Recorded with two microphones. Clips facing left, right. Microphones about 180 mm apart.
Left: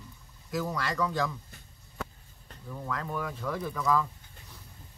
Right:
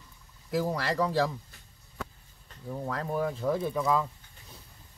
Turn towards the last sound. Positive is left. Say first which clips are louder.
# right 1 dB
turn(degrees=-25)  # may be behind; listen again after turning